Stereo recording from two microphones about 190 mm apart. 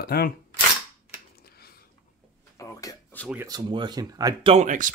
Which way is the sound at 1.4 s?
55° left (ahead or behind).